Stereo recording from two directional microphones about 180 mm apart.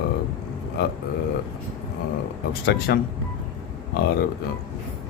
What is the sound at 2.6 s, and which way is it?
Speech, 65° left (ahead or behind).